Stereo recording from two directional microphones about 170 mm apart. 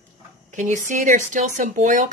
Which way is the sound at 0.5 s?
45° right (ahead or behind).